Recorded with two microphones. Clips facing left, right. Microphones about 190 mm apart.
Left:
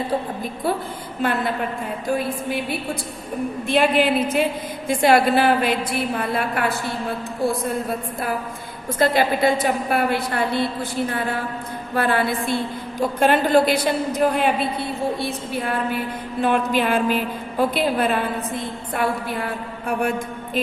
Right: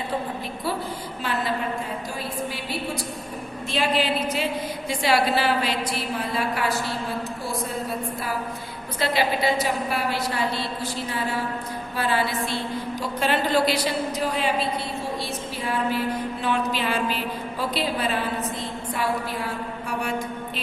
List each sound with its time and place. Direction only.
1.2 s a woman's voice: 55° left (ahead or behind)
3.7 s a woman's voice: 55° left (ahead or behind)
11.9 s a woman's voice: 55° left (ahead or behind)